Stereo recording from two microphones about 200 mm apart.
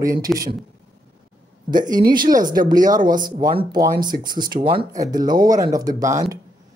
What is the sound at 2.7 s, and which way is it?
Speech, 20° right (ahead or behind).